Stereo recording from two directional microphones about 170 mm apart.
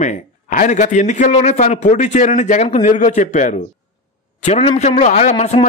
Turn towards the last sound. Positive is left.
turn(degrees=40)  # may be behind; listen again after turning